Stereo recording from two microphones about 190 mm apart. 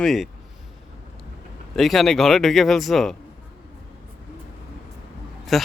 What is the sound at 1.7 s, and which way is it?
Speech, centre (ahead or behind).